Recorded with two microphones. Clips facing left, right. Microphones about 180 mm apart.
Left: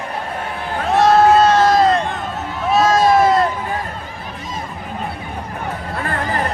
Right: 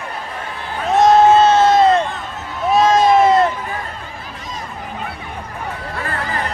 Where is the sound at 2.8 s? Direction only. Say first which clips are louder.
Right 1 dB; 20° right (ahead or behind).